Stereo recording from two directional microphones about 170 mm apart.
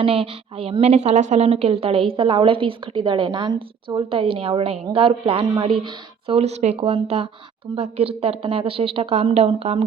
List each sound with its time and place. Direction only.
0.0 s a woman's voice: 35° right (ahead or behind)